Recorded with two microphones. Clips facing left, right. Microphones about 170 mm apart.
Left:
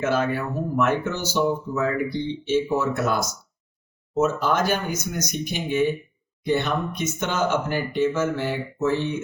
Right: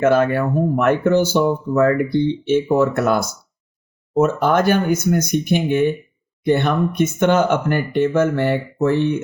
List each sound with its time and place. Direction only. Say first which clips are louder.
0.0 s speech: right 8 dB; 55° right (ahead or behind)